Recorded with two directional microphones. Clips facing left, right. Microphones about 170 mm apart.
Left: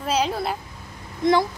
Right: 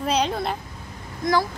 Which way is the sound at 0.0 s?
5° left (ahead or behind).